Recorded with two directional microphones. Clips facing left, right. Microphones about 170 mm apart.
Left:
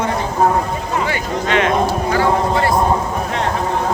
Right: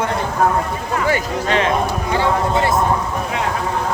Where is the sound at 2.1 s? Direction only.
25° right (ahead or behind).